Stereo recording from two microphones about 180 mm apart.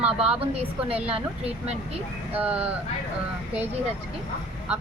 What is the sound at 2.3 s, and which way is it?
Speech, 10° right (ahead or behind).